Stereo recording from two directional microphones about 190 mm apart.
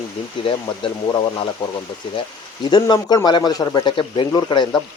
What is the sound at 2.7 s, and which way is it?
Speech, 20° left (ahead or behind).